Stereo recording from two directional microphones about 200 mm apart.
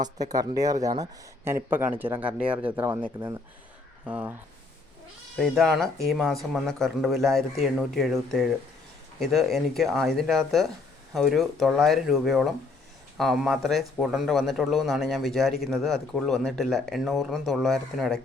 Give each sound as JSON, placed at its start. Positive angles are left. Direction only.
{"t": 0.0, "sound": "speech", "side_deg": -20}
{"t": 5.4, "sound": "speech", "side_deg": 0}